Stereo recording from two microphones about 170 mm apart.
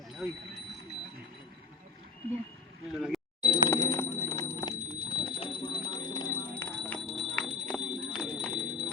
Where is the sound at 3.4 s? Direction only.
20° left (ahead or behind).